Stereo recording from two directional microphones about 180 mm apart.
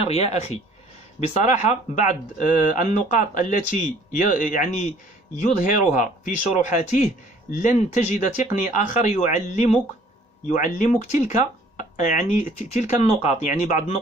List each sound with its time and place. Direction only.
0.0 s speech: 35° left (ahead or behind)